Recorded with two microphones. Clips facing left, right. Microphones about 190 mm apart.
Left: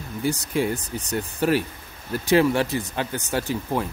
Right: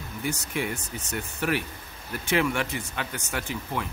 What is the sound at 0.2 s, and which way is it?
Speech, 35° left (ahead or behind).